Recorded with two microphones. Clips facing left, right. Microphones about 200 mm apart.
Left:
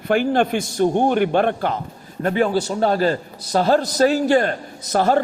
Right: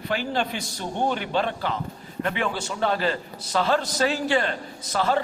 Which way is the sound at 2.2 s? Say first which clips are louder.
Left 9 dB; 40° left (ahead or behind).